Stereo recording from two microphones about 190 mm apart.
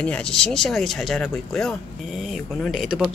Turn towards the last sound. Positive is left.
turn(degrees=0)  # may be behind; listen again after turning